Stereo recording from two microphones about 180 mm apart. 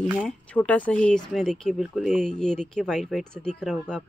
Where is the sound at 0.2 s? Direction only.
5° left (ahead or behind).